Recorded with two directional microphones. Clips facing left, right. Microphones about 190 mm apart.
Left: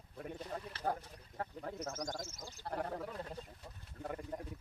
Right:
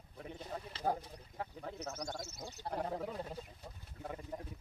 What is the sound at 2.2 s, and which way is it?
Speech, 70° right (ahead or behind).